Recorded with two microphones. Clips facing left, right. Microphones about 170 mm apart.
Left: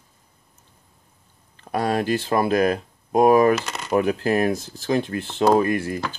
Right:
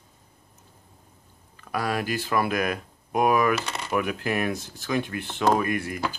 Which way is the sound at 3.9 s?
35° left (ahead or behind).